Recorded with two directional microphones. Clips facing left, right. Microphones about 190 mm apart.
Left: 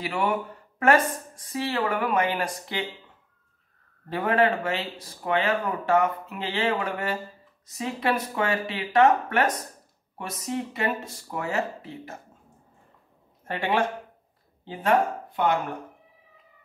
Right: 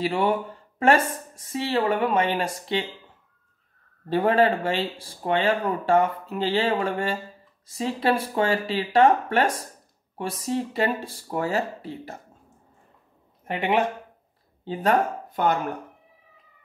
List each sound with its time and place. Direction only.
0.0 s speech: 30° right (ahead or behind)
4.1 s speech: 35° right (ahead or behind)
13.5 s speech: 20° right (ahead or behind)
14.7 s speech: 35° right (ahead or behind)